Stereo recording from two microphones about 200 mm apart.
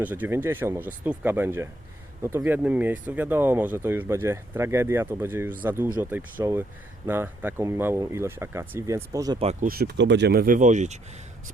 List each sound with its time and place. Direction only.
0.0 s speech: 10° right (ahead or behind)
9.4 s speech: 30° right (ahead or behind)
9.6 s speech: 50° right (ahead or behind); by 11.0 s 35° right (ahead or behind)